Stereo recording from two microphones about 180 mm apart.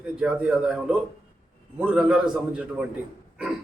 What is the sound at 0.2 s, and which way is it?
A man's voice, 5° right (ahead or behind).